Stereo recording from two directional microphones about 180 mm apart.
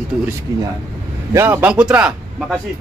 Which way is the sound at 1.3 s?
10° right (ahead or behind).